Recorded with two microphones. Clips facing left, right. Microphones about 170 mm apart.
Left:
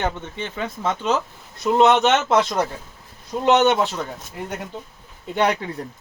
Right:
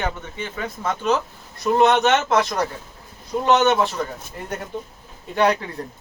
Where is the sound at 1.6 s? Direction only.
20° left (ahead or behind).